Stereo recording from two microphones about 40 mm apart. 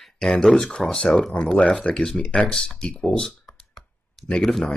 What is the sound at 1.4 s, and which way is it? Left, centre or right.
Speech, left.